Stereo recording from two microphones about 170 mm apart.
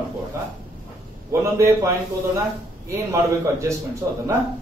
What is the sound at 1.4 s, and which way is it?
A man's voice, 15° right (ahead or behind).